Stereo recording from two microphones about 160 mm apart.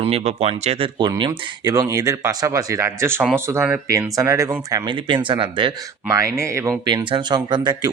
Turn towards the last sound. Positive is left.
turn(degrees=-25)  # may be behind; listen again after turning